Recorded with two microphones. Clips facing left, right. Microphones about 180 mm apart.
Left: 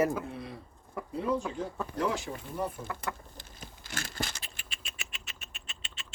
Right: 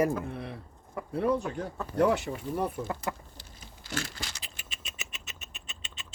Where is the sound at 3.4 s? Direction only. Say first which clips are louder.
Left 2 dB; 50° left (ahead or behind).